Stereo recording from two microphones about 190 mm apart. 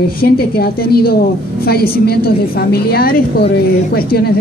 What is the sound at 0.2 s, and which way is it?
A woman's voice, 55° left (ahead or behind).